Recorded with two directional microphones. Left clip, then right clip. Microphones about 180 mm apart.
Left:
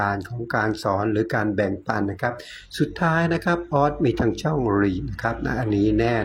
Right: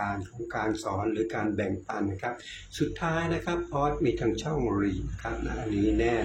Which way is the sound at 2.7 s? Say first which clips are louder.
Left 7 dB; 30° left (ahead or behind).